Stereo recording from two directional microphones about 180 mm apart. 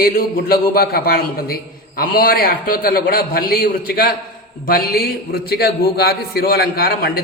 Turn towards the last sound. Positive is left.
turn(degrees=55)  # may be behind; listen again after turning